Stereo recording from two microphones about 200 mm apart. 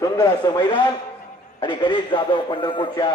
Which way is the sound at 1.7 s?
25° left (ahead or behind).